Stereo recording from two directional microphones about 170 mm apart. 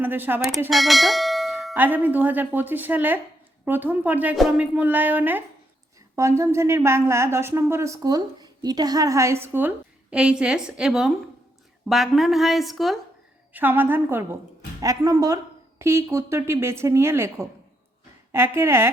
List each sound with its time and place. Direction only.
0.0 s a woman's voice: 10° right (ahead or behind)
0.7 s speech: centre (ahead or behind)
1.7 s a woman's voice: 10° right (ahead or behind)
13.5 s a woman's voice: 10° right (ahead or behind)